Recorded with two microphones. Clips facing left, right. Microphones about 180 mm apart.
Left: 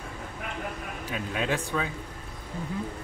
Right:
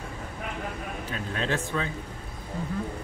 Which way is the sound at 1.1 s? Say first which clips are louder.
Left 1 dB; 10° left (ahead or behind).